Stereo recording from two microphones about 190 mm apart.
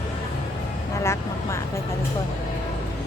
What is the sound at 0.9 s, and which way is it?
Vehicle, 15° left (ahead or behind).